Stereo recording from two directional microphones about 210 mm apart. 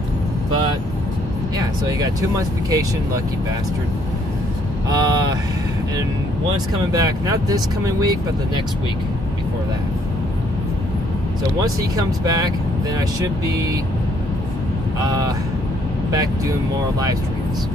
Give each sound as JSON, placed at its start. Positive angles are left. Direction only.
{"t": 1.6, "sound": "speech", "side_deg": -15}
{"t": 4.8, "sound": "speech", "side_deg": -20}
{"t": 6.9, "sound": "speech", "side_deg": -20}
{"t": 11.6, "sound": "speech", "side_deg": -20}
{"t": 15.0, "sound": "speech", "side_deg": -15}